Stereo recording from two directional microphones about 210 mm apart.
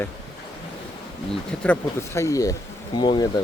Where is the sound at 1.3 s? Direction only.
5° left (ahead or behind).